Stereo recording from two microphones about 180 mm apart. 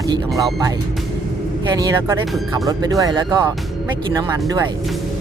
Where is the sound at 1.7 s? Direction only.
20° right (ahead or behind).